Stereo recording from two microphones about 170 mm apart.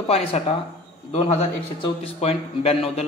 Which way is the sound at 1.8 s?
35° left (ahead or behind).